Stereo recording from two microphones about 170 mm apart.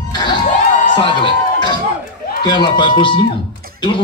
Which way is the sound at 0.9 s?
30° left (ahead or behind).